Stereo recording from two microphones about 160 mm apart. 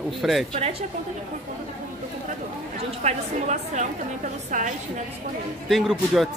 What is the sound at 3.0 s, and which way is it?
A woman's voice, 45° right (ahead or behind).